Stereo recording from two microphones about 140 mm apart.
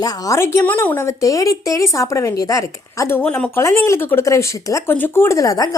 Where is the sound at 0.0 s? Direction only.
20° left (ahead or behind).